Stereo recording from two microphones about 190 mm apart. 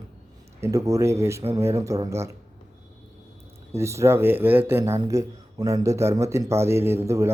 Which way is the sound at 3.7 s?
15° right (ahead or behind).